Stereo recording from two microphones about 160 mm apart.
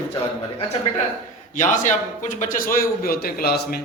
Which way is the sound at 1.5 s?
55° left (ahead or behind).